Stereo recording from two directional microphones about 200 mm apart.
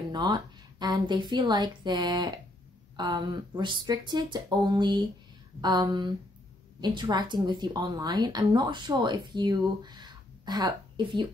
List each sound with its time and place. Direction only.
0.1 s a woman's voice: 20° right (ahead or behind)